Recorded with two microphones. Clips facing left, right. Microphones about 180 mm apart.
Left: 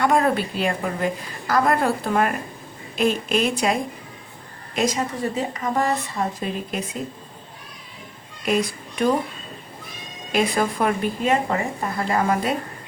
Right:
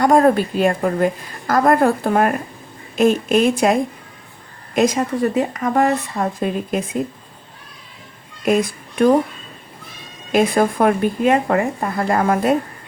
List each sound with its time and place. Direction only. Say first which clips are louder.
0.0 s a woman's voice: right 6 dB; 45° right (ahead or behind); by 5.9 s 60° right (ahead or behind)
6.4 s speech: right 6 dB; 50° right (ahead or behind)
8.4 s a child's voice: right 5 dB; 50° right (ahead or behind)
10.3 s speech: right 6 dB; 50° right (ahead or behind)